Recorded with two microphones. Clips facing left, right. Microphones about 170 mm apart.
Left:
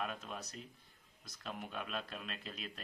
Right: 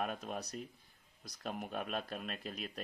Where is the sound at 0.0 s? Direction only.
45° right (ahead or behind).